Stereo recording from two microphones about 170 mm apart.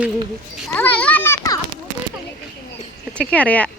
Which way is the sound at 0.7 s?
10° left (ahead or behind).